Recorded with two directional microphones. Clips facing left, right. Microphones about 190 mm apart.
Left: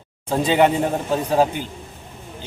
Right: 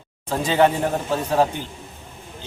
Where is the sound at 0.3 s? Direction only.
15° left (ahead or behind).